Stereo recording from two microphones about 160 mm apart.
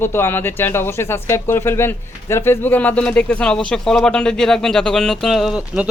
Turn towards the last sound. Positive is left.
turn(degrees=-5)  # may be behind; listen again after turning